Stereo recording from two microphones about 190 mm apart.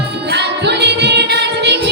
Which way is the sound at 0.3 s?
65° right (ahead or behind).